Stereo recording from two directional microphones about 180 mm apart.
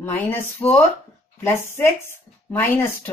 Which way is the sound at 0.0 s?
10° left (ahead or behind).